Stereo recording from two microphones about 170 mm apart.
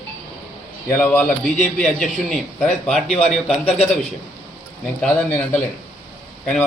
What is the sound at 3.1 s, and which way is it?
Speech, 40° left (ahead or behind).